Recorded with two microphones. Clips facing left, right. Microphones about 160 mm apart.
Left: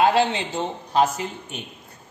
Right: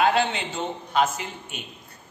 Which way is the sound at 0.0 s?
35° left (ahead or behind).